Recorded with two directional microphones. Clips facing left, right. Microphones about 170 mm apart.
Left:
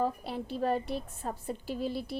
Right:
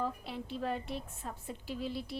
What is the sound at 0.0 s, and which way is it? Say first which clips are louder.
A woman's voice: left 5 dB; 40° left (ahead or behind).